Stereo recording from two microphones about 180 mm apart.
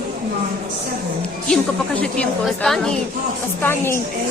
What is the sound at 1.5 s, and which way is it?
A woman's voice, 5° left (ahead or behind).